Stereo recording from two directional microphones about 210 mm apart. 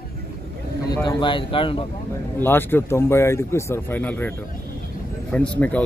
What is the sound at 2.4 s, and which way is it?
A man's voice, 10° left (ahead or behind).